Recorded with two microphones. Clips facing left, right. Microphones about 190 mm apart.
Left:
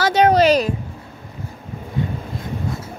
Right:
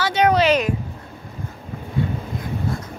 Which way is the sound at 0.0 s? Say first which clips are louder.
Left 3 dB; 40° left (ahead or behind).